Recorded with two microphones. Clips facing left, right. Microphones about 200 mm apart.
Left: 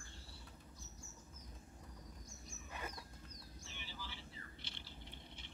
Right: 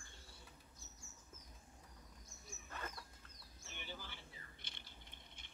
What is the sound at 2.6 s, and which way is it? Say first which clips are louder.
Dog: left 1 dB; 15° left (ahead or behind).